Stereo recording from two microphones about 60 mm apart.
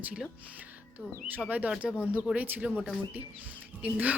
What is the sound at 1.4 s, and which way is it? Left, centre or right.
Speech, right.